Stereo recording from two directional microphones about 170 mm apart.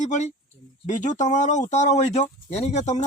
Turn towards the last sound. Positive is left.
turn(degrees=40)  # may be behind; listen again after turning